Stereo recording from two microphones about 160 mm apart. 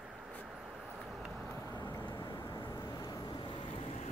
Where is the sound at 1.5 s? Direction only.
15° left (ahead or behind); by 4.1 s 40° left (ahead or behind).